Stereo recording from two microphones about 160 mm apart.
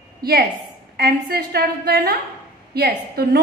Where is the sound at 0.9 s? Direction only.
80° right.